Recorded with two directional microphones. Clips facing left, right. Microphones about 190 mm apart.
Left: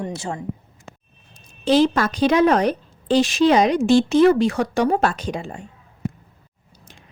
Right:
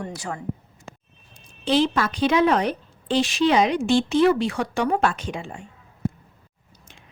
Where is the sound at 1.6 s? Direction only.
40° left (ahead or behind).